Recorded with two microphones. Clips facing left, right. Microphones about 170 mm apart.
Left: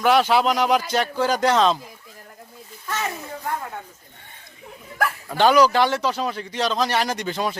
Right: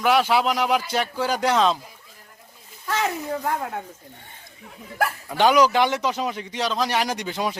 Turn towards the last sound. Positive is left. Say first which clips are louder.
# left 1 dB
turn(degrees=-10)  # may be behind; listen again after turning